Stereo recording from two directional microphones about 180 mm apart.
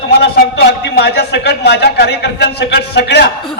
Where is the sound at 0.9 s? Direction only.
70° left (ahead or behind).